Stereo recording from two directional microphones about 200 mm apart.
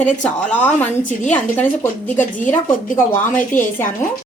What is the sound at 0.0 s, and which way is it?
Speech, 5° left (ahead or behind).